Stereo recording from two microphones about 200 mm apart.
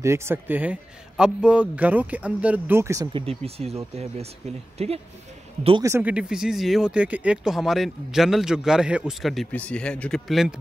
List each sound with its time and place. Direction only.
0.0 s a man's voice: 15° right (ahead or behind)
5.9 s speech: 10° right (ahead or behind)